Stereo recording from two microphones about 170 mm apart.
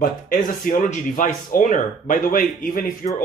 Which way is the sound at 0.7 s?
50° left (ahead or behind).